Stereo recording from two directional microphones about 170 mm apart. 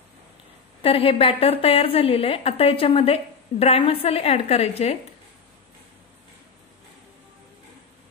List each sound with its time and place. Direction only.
0.8 s a woman's voice: 30° left (ahead or behind)